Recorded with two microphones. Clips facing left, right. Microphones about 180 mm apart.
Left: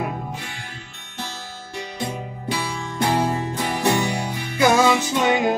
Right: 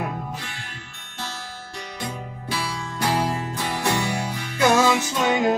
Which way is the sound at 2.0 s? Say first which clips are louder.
Left 3 dB; 20° left (ahead or behind).